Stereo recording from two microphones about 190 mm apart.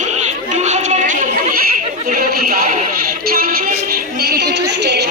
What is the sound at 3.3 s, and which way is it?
Music, 50° right (ahead or behind).